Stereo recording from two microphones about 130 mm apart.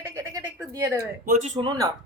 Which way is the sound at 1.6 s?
40° right (ahead or behind).